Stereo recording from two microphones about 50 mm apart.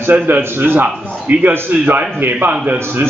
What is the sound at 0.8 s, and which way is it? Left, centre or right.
Speech, right.